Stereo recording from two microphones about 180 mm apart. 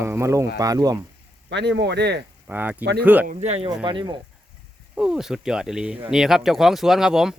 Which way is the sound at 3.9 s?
25° right (ahead or behind).